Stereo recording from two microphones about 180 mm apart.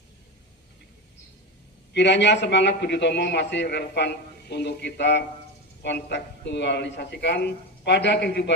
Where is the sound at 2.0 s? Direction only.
75° left (ahead or behind).